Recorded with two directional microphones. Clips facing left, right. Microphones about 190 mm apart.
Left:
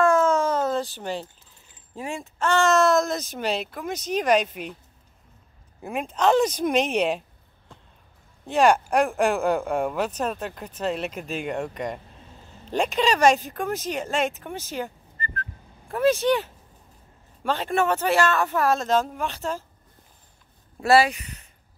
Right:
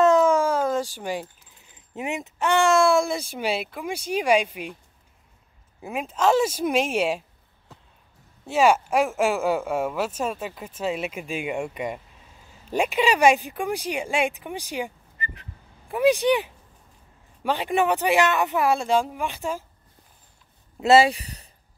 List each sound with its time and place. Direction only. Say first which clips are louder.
0.0 s a sound: right 2 dB; 15° right (ahead or behind)
2.0 s speech: right 2 dB; 20° right (ahead or behind)
5.8 s speech: even; centre (ahead or behind)
20.8 s speech: right 2 dB; 20° right (ahead or behind)
21.1 s speech: right 4 dB; 35° right (ahead or behind)